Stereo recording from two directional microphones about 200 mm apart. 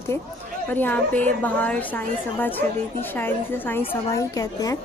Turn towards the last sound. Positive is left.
turn(degrees=15)  # may be behind; listen again after turning